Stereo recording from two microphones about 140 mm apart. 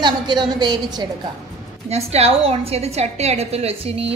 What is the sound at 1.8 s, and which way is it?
A woman's voice, 50° right (ahead or behind).